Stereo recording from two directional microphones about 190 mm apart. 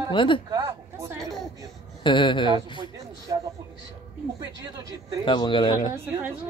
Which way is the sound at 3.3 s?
20° right (ahead or behind).